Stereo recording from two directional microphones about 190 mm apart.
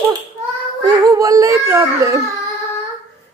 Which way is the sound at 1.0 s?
15° right (ahead or behind).